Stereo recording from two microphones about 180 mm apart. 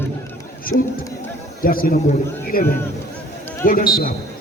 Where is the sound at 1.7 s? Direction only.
50° left (ahead or behind).